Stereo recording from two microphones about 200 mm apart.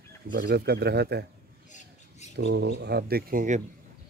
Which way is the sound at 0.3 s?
50° right (ahead or behind).